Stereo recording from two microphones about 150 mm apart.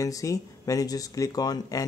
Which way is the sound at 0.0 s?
20° left (ahead or behind).